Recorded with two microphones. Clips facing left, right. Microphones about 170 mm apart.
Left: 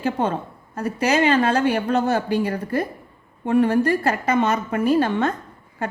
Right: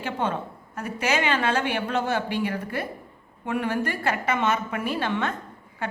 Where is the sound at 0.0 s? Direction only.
35° left (ahead or behind).